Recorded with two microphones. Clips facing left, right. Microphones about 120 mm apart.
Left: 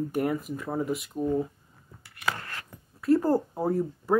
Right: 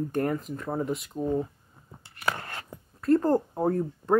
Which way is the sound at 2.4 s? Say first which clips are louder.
Right 2 dB; 25° right (ahead or behind).